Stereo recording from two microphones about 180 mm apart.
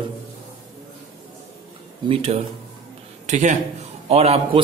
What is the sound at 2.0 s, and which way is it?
A man's voice, 35° right (ahead or behind).